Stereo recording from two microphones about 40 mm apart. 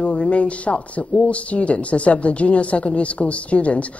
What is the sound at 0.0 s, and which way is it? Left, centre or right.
Speech, left.